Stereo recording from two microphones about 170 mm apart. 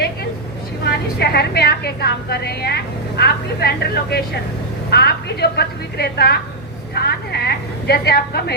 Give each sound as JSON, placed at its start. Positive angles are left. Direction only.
{"t": 0.9, "sound": "a woman's voice", "side_deg": 70}